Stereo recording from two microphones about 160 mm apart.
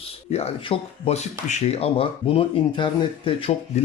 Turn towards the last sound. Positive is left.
turn(degrees=45)  # may be behind; listen again after turning